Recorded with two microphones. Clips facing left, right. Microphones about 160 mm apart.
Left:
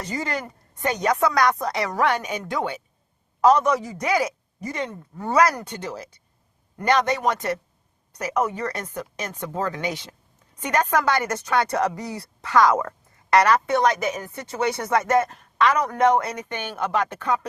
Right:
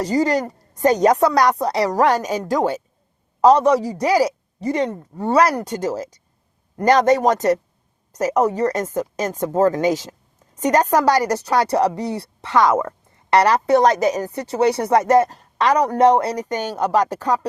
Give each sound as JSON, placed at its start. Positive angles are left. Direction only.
{"t": 0.0, "sound": "speech", "side_deg": -35}